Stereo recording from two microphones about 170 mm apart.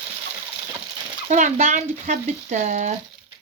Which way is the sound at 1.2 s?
45° right (ahead or behind).